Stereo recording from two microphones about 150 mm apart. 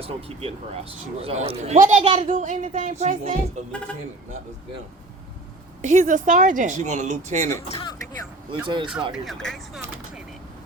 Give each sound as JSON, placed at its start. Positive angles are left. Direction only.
{"t": 0.0, "sound": "a man's voice", "side_deg": -40}
{"t": 2.3, "sound": "a man's voice", "side_deg": -55}
{"t": 5.8, "sound": "a man's voice", "side_deg": -50}
{"t": 7.7, "sound": "speech", "side_deg": 35}
{"t": 8.4, "sound": "speech", "side_deg": -30}
{"t": 9.1, "sound": "speech", "side_deg": 0}